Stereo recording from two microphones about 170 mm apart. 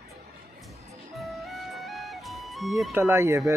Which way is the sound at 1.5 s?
Centre (ahead or behind).